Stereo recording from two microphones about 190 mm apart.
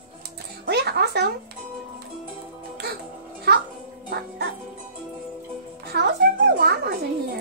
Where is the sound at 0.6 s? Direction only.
60° right (ahead or behind).